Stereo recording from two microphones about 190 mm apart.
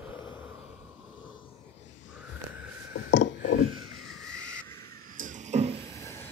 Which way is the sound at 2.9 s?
70° left (ahead or behind).